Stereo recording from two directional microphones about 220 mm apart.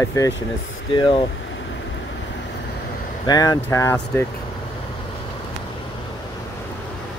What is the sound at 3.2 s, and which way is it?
Speech, 15° left (ahead or behind).